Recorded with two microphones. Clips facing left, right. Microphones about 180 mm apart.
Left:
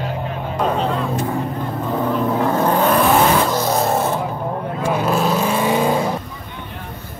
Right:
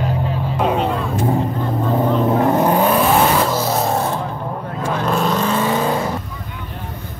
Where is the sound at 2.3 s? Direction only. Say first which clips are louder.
Right 2 dB; 20° right (ahead or behind).